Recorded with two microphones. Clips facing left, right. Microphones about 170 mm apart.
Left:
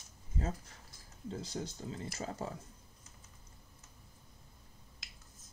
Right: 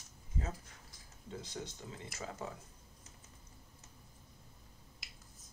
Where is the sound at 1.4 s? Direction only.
35° left (ahead or behind).